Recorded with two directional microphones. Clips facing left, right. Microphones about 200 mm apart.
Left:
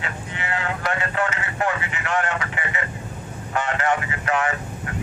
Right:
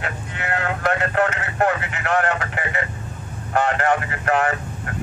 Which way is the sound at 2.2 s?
50° right (ahead or behind).